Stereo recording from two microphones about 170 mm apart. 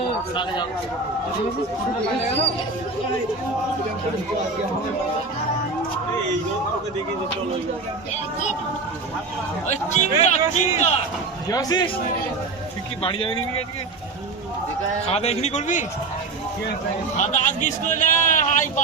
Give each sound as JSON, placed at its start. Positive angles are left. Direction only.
{"t": 9.9, "sound": "speech", "side_deg": 40}
{"t": 11.5, "sound": "a man's voice", "side_deg": 25}
{"t": 13.0, "sound": "speech", "side_deg": 35}
{"t": 15.0, "sound": "speech", "side_deg": 35}
{"t": 17.2, "sound": "a man's voice", "side_deg": 45}